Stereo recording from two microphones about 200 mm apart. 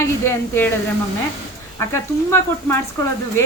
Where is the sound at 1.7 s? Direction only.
15° left (ahead or behind).